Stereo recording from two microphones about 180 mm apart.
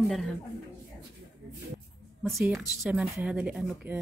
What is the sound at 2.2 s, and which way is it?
A woman's voice, centre (ahead or behind).